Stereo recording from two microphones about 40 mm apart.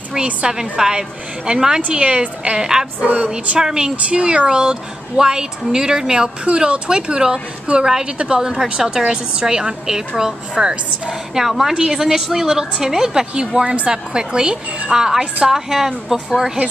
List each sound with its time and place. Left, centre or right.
0.1 s a woman's voice: centre
3.0 s music: right
3.3 s a woman's voice: centre
11.1 s a woman's voice: centre